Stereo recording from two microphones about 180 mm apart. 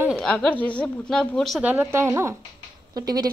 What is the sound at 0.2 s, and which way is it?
A woman's voice, 5° left (ahead or behind).